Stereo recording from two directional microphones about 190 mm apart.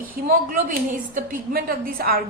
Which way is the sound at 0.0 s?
50° right (ahead or behind).